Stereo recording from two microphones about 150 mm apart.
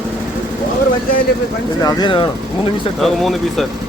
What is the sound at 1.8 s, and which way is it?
Speech, 30° left (ahead or behind).